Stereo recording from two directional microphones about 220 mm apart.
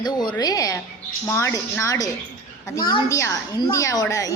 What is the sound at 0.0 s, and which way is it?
A woman's voice, 20° left (ahead or behind).